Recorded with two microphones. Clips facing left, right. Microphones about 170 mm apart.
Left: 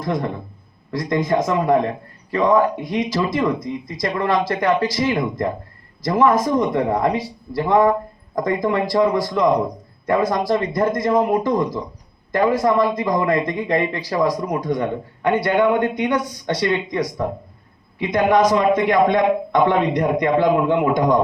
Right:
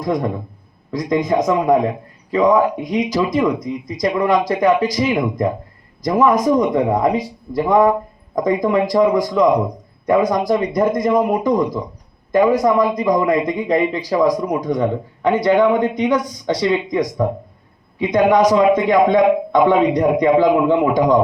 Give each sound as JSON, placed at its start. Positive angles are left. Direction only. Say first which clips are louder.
{"t": 0.0, "sound": "a man's voice", "louder": "right 3 dB", "side_deg": -15}
{"t": 15.4, "sound": "a man's voice", "louder": "right 4 dB", "side_deg": 5}
{"t": 15.7, "sound": "a man's voice", "louder": "right 3 dB", "side_deg": -10}